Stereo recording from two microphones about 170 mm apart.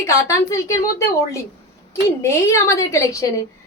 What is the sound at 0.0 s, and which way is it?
A woman's voice, 15° left (ahead or behind).